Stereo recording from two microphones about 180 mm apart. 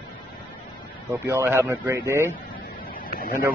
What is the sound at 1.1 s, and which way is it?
Speech, 15° right (ahead or behind).